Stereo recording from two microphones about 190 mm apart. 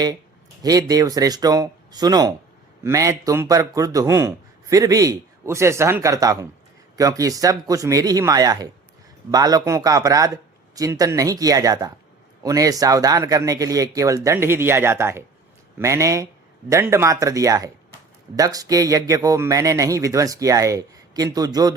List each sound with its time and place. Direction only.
0.6 s a man's voice: 20° right (ahead or behind)